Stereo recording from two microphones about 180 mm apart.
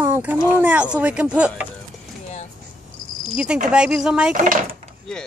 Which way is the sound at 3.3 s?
5° right (ahead or behind).